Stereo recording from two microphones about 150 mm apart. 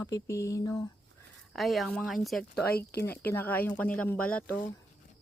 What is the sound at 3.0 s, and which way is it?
Speech, 15° left (ahead or behind).